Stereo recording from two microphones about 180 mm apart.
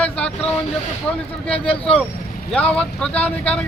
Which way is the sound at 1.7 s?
30° left (ahead or behind).